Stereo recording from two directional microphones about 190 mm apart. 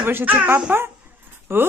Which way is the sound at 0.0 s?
10° right (ahead or behind).